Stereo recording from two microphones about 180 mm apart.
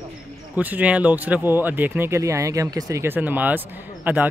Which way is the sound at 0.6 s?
10° right (ahead or behind).